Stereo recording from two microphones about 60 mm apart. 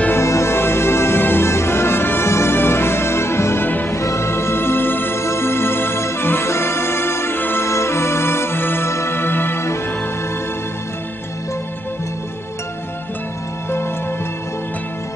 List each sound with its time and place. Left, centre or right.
0.1 s music: left
3.6 s music: left
3.9 s music: left
5.2 s organ: left
7.6 s music: left